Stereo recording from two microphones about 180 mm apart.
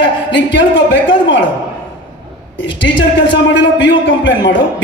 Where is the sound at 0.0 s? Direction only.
80° left.